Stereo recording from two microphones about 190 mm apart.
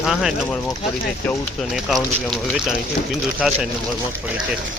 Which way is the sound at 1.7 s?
Centre (ahead or behind).